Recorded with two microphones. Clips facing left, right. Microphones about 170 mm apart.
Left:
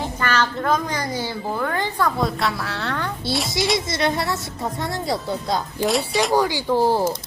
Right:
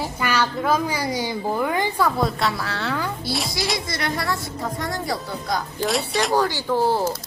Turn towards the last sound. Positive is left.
turn(degrees=15)  # may be behind; listen again after turning